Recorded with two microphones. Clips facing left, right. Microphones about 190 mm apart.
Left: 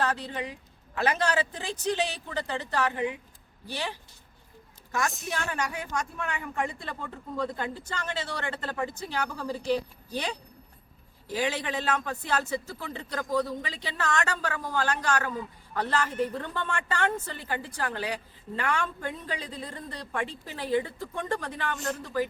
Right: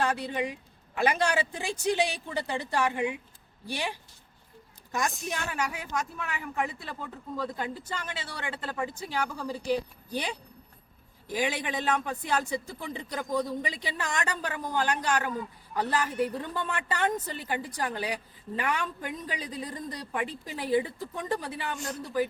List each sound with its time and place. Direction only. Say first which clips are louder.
0.0 s a woman's voice: right 2 dB; 10° right (ahead or behind)